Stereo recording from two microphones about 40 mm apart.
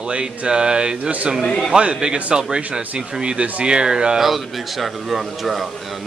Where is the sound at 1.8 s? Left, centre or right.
Right.